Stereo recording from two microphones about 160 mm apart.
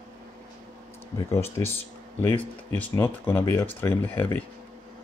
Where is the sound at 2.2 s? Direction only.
10° left (ahead or behind).